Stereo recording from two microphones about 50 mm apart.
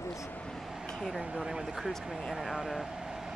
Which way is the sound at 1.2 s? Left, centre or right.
Centre.